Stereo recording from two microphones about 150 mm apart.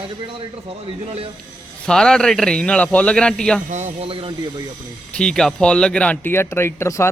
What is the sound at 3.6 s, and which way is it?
Speech, 50° right (ahead or behind).